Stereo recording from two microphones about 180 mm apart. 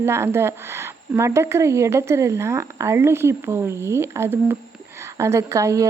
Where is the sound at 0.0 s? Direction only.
15° right (ahead or behind).